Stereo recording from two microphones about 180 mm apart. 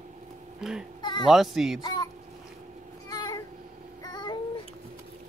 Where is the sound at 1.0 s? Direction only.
25° left (ahead or behind).